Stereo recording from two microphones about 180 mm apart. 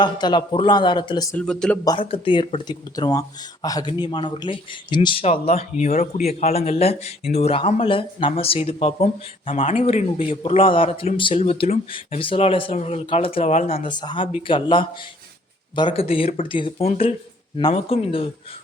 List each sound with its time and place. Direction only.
0.0 s speech: 25° left (ahead or behind)
1.4 s speech: 5° left (ahead or behind)
1.8 s speech: 25° left (ahead or behind)